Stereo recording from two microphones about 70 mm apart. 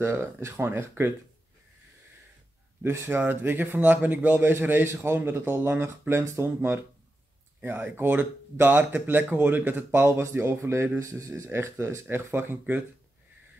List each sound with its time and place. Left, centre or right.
0.0 s speech: right
2.8 s speech: right